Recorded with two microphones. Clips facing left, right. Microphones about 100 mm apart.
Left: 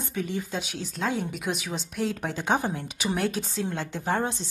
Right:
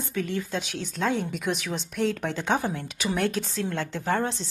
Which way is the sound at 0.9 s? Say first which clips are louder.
Right 2 dB; centre (ahead or behind).